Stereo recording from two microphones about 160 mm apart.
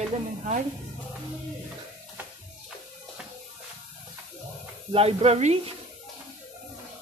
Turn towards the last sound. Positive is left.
turn(degrees=-40)  # may be behind; listen again after turning